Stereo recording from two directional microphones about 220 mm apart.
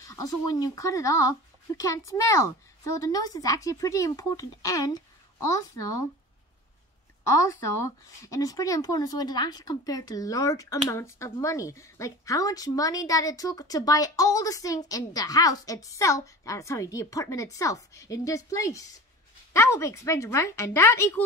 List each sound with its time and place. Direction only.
0.1 s speech: 15° left (ahead or behind)
7.2 s speech: 15° left (ahead or behind)